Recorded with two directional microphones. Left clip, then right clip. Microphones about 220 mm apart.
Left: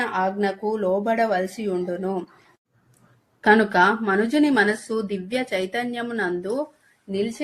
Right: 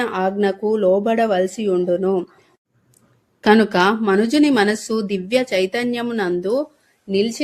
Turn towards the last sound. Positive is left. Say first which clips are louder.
# right 7 dB
turn(degrees=-40)  # may be behind; listen again after turning